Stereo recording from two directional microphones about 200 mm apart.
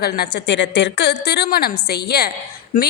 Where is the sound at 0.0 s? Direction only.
55° left (ahead or behind).